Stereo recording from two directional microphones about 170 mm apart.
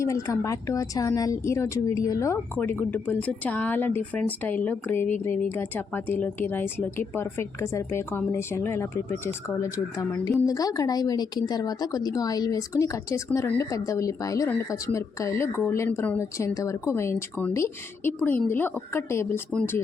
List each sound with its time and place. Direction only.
0.0 s a woman's voice: 20° left (ahead or behind)